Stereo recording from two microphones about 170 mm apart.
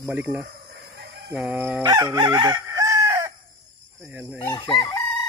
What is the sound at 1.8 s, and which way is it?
Chicken, 25° right (ahead or behind).